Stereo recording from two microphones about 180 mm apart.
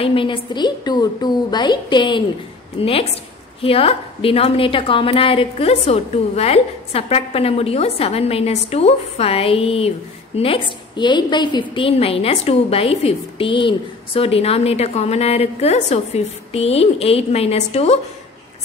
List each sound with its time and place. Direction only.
0.0 s a woman's voice: 30° left (ahead or behind)